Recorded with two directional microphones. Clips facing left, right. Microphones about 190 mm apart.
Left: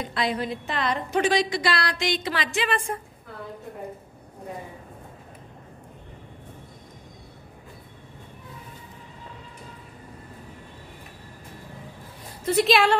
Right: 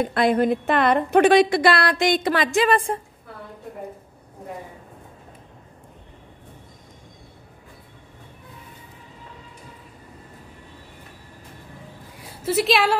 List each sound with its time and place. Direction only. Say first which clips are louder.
0.0 s a woman's voice: right 8 dB; 55° right (ahead or behind); by 3.0 s 35° right (ahead or behind)
12.2 s a woman's voice: even; 5° right (ahead or behind)